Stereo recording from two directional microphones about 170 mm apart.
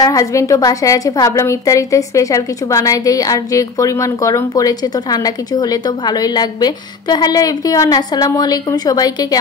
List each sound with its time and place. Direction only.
0.0 s a woman's voice: 20° left (ahead or behind)